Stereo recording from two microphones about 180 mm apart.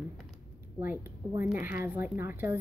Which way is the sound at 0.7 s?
10° right (ahead or behind).